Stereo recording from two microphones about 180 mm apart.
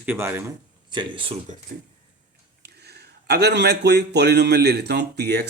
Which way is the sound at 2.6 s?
65° right (ahead or behind).